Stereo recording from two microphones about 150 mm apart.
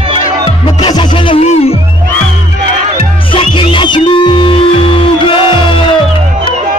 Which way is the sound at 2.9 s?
35° left (ahead or behind).